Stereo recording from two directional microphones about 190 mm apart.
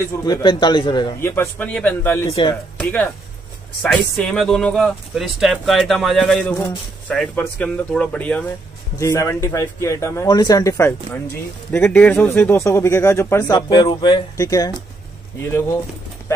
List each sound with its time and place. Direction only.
0.2 s a man's voice: 20° left (ahead or behind)
1.3 s speech: 10° left (ahead or behind)